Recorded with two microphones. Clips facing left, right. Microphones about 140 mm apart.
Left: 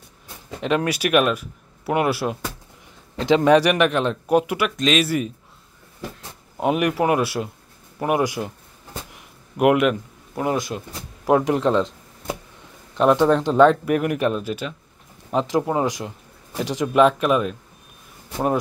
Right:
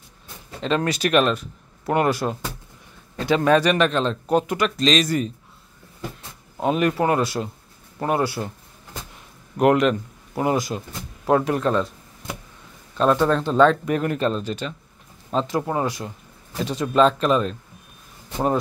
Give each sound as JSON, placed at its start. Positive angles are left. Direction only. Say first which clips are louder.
{"t": 0.6, "sound": "speech", "louder": "left 1 dB", "side_deg": 10}
{"t": 3.2, "sound": "speech", "louder": "left 3 dB", "side_deg": 20}
{"t": 6.6, "sound": "speech", "louder": "even", "side_deg": 15}
{"t": 9.6, "sound": "speech", "louder": "even", "side_deg": 10}
{"t": 10.3, "sound": "speech", "louder": "right 1 dB", "side_deg": 0}
{"t": 11.2, "sound": "speech", "louder": "left 2 dB", "side_deg": 15}